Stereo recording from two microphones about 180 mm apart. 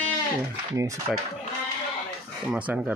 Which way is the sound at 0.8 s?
15° right (ahead or behind).